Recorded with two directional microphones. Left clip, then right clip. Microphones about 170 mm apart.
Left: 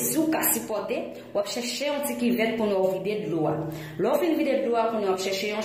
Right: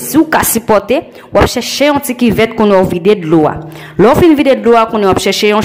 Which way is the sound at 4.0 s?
35° right (ahead or behind).